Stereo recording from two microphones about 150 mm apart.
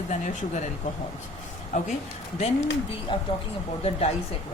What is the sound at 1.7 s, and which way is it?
Speech, 55° left (ahead or behind).